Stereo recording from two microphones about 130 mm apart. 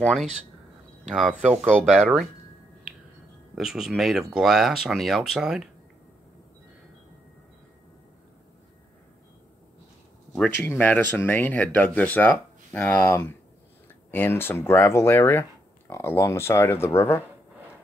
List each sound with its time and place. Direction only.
1.1 s speech: centre (ahead or behind)
3.5 s speech: 5° right (ahead or behind)
10.6 s speech: 15° left (ahead or behind)